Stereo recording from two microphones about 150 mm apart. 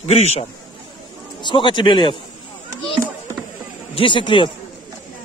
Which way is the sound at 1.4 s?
30° left (ahead or behind).